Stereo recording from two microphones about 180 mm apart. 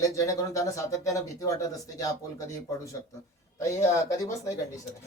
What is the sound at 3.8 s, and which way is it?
Speech, 15° left (ahead or behind).